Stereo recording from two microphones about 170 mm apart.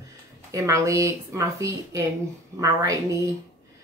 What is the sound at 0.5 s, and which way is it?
A woman's voice, 20° right (ahead or behind).